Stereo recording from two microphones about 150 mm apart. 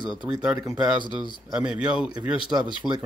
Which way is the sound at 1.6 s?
5° right (ahead or behind).